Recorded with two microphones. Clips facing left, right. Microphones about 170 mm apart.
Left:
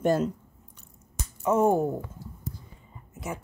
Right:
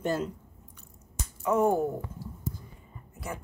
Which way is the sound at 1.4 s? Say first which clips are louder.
Left 2 dB; 20° left (ahead or behind).